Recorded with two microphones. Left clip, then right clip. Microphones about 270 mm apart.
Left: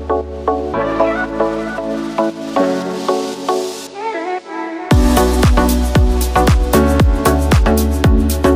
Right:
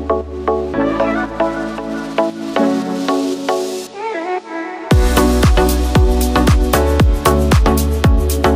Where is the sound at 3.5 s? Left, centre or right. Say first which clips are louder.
Even; centre.